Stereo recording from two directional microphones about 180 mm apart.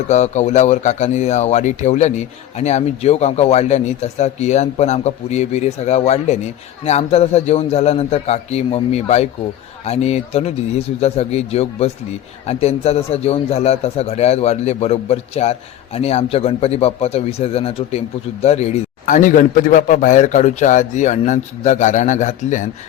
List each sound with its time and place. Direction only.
0.1 s a man's voice: 40° left (ahead or behind)